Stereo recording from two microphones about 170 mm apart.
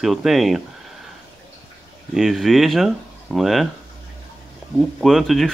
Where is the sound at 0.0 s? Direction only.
Centre (ahead or behind).